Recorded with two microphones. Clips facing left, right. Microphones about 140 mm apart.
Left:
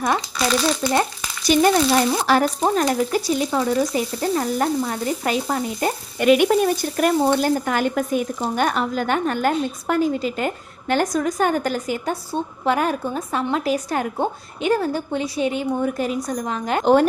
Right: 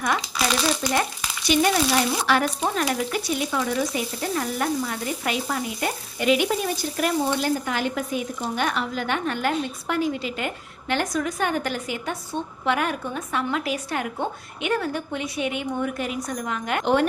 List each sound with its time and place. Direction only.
0.8 s frying: 15° left (ahead or behind)
1.5 s speech: 40° left (ahead or behind)
6.1 s sizzle: 55° left (ahead or behind)
7.4 s speech: 50° left (ahead or behind)